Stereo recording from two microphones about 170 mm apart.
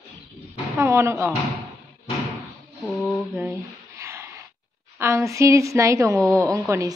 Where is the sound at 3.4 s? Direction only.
15° right (ahead or behind).